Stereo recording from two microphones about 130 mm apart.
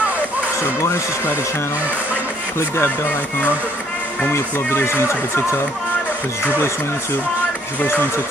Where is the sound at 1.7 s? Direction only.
10° right (ahead or behind).